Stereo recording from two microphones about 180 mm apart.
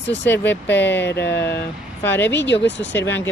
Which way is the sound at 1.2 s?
70° left (ahead or behind).